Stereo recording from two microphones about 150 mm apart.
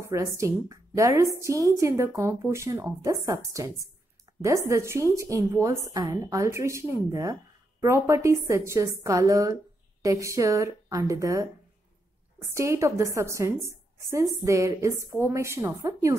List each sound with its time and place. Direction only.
0.0 s a woman's voice: 20° right (ahead or behind)
12.4 s a woman's voice: 20° right (ahead or behind)